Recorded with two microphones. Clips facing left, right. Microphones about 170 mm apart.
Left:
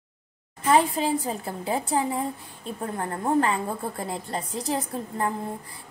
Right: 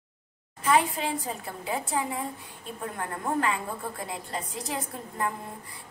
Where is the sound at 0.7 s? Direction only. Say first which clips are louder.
Left 4 dB; 35° left (ahead or behind).